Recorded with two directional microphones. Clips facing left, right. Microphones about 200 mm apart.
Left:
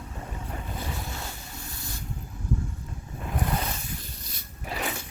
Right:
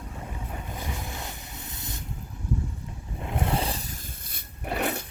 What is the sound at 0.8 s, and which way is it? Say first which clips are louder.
Boat: even; 20° right (ahead or behind).